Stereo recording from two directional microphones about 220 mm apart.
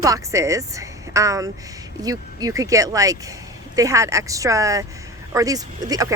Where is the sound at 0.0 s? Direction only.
15° right (ahead or behind).